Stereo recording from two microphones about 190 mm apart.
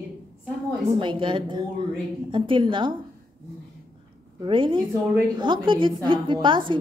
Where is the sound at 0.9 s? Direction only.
25° right (ahead or behind).